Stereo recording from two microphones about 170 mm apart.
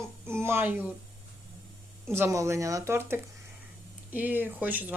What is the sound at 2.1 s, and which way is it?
Speech, 15° right (ahead or behind).